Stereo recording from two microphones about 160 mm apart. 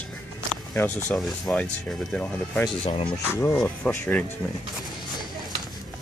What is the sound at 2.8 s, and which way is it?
Speech, 35° left (ahead or behind).